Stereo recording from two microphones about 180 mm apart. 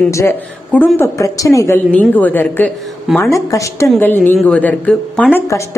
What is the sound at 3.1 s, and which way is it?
Speech, centre (ahead or behind).